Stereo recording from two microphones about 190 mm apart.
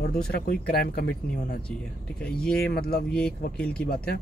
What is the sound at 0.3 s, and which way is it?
Speech, 55° left (ahead or behind).